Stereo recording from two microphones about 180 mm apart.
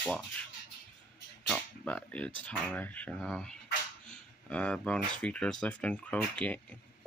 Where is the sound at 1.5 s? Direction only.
5° left (ahead or behind).